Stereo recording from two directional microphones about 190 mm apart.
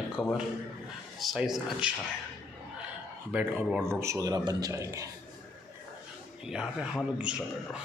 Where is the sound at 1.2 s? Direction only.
Centre (ahead or behind).